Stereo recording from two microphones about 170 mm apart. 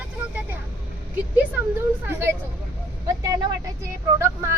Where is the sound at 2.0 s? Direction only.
15° right (ahead or behind).